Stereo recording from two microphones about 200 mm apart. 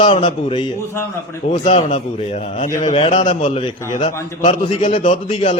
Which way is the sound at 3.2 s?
25° left (ahead or behind).